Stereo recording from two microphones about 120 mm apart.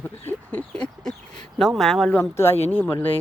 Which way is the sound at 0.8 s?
5° left (ahead or behind).